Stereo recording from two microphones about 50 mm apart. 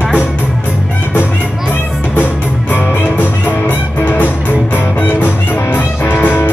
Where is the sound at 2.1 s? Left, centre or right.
Left.